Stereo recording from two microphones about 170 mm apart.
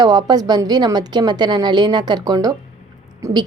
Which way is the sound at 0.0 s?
25° right (ahead or behind).